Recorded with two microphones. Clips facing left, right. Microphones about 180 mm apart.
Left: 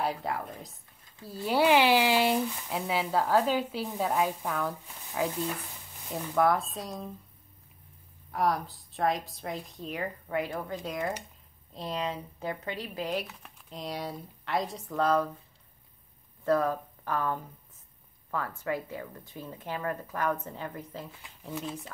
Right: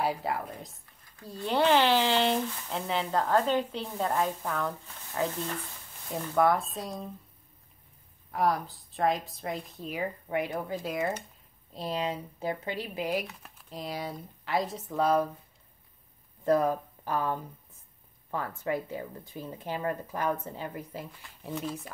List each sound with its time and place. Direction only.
0.0 s speech: centre (ahead or behind)
8.3 s speech: centre (ahead or behind)
10.2 s a woman's voice: 20° right (ahead or behind)
10.6 s speech: 5° right (ahead or behind)
12.4 s speech: 30° right (ahead or behind)
12.7 s a woman's voice: 10° right (ahead or behind)
16.4 s a woman's voice: 15° right (ahead or behind)